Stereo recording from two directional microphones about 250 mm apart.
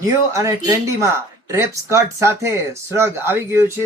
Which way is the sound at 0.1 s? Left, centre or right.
Centre.